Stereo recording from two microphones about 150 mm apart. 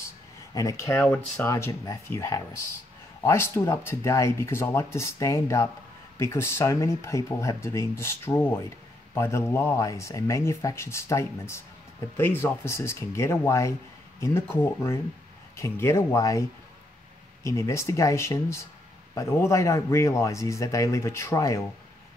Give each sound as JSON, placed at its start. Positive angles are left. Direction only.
{"t": 0.6, "sound": "speech", "side_deg": 20}